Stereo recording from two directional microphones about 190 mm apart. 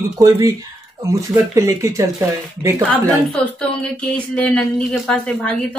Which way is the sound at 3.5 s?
5° left (ahead or behind).